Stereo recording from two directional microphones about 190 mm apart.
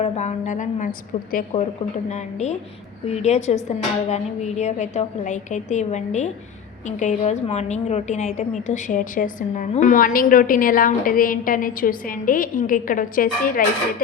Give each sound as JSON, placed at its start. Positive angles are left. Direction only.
{"t": 0.0, "sound": "a woman's voice", "side_deg": 35}